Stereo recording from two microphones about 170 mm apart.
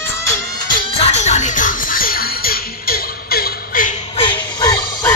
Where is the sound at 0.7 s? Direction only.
40° left (ahead or behind); by 4.0 s 55° left (ahead or behind).